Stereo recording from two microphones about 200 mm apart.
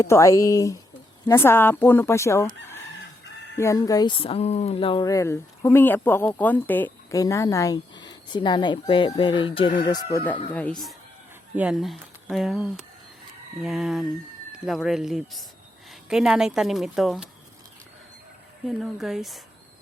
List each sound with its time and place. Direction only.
0.0 s goose: 15° left (ahead or behind)
3.6 s speech: 15° left (ahead or behind); by 17.2 s centre (ahead or behind)
18.7 s speech: centre (ahead or behind)